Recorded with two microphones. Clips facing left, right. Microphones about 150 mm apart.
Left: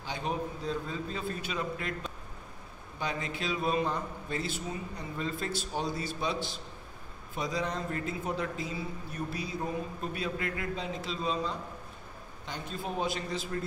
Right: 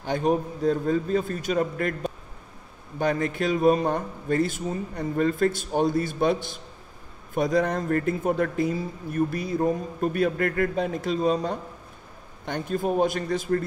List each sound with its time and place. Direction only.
0.0 s speech: 50° right (ahead or behind)